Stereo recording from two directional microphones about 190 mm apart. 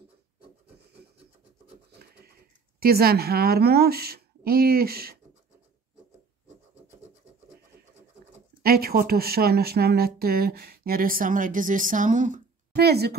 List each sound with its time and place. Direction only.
2.8 s a woman's voice: 55° right (ahead or behind)
8.6 s a woman's voice: 55° right (ahead or behind)
12.7 s a woman's voice: 60° right (ahead or behind)